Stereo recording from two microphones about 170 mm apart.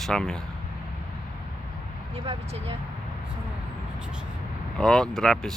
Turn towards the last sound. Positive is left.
turn(degrees=5)  # may be behind; listen again after turning